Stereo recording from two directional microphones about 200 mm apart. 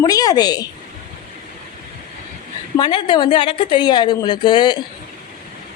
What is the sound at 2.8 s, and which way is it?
Speech, 25° left (ahead or behind).